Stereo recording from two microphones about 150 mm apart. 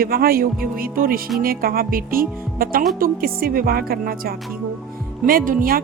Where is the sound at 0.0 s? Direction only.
80° right.